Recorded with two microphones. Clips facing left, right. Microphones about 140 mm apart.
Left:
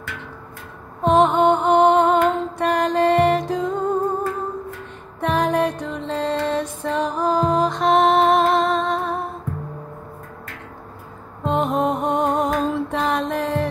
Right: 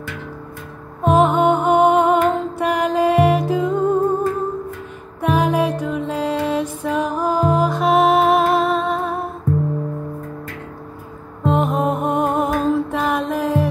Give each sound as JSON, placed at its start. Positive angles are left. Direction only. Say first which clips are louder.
{"t": 1.0, "sound": "music", "louder": "right 1 dB", "side_deg": -5}
{"t": 5.2, "sound": "music", "louder": "right 2 dB", "side_deg": -5}
{"t": 11.4, "sound": "music", "louder": "right 2 dB", "side_deg": 0}